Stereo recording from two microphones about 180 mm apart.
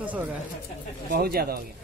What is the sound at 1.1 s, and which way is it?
Speech, 55° right (ahead or behind).